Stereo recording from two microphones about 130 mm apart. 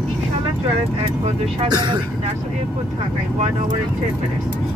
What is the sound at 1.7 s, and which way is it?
Speech, 35° right (ahead or behind).